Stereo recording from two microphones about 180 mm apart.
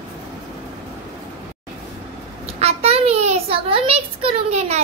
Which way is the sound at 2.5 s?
35° right (ahead or behind).